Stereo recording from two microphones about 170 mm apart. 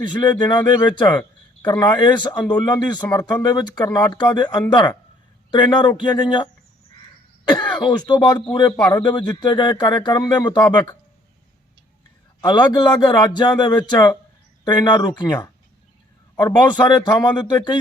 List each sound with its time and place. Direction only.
0.1 s speech: 25° left (ahead or behind)
1.2 s a sound: 10° left (ahead or behind)
1.8 s a man's voice: 25° left (ahead or behind)
7.4 s speech: 25° left (ahead or behind)
12.4 s speech: 25° left (ahead or behind)